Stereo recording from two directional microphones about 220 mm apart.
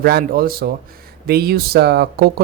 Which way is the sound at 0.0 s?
45° right (ahead or behind).